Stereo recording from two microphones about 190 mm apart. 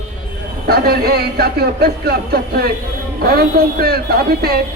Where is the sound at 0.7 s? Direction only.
55° right (ahead or behind).